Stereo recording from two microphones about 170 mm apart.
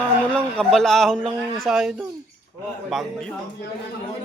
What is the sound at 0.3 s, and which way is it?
A man's voice, 5° left (ahead or behind).